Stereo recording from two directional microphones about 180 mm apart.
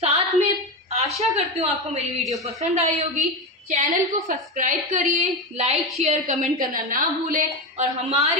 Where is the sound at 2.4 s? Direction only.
35° right (ahead or behind).